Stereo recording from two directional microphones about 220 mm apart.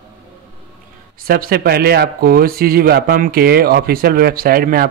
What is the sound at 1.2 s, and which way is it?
Speech, 40° right (ahead or behind).